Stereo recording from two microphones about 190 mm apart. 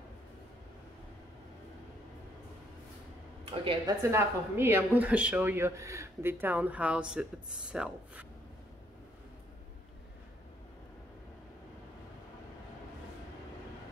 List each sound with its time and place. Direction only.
3.4 s a woman's voice: 25° right (ahead or behind)
4.1 s speech: 10° right (ahead or behind)